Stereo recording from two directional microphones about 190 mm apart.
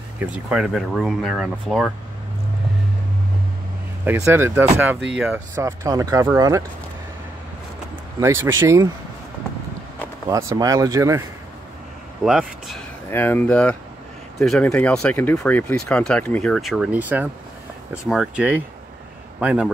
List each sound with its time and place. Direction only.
0.2 s speech: 5° right (ahead or behind)
4.0 s speech: 10° right (ahead or behind)
8.2 s speech: 15° right (ahead or behind)
10.3 s speech: 20° right (ahead or behind)
12.3 s speech: centre (ahead or behind)
13.1 s speech: 10° left (ahead or behind); by 19.7 s 5° right (ahead or behind)